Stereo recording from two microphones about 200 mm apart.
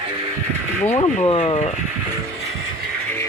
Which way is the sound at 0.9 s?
25° left (ahead or behind).